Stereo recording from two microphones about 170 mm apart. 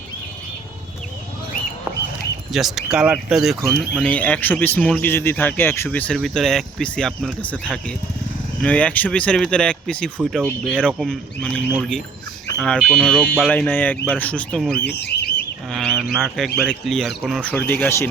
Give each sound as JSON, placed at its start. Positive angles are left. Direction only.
{"t": 2.5, "sound": "speech", "side_deg": 0}
{"t": 3.5, "sound": "speech", "side_deg": -15}
{"t": 4.0, "sound": "a man's voice", "side_deg": 10}
{"t": 14.8, "sound": "bird", "side_deg": 75}
{"t": 15.7, "sound": "bird", "side_deg": 5}
{"t": 16.1, "sound": "speech", "side_deg": 0}
{"t": 17.5, "sound": "a man's voice", "side_deg": 10}